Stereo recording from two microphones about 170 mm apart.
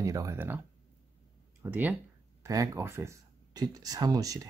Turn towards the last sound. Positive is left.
turn(degrees=-20)  # may be behind; listen again after turning